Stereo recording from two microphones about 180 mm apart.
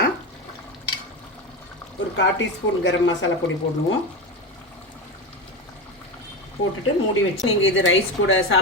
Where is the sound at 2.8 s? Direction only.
90° left.